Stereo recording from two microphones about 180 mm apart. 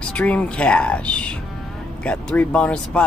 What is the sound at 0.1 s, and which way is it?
Speech, 5° left (ahead or behind).